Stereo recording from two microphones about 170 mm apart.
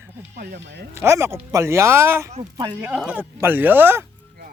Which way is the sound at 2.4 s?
25° right (ahead or behind).